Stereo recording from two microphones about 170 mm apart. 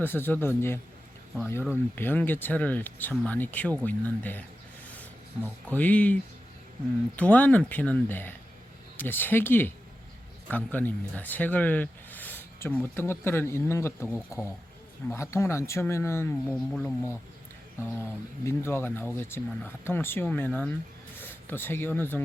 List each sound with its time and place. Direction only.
0.0 s speech: 10° left (ahead or behind)
5.6 s speech: 10° left (ahead or behind)
7.2 s speech: 10° left (ahead or behind)